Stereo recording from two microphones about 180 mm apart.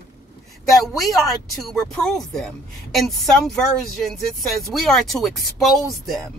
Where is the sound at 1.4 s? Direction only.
Centre (ahead or behind).